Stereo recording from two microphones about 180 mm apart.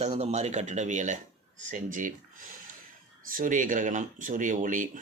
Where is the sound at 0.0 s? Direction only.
35° right (ahead or behind).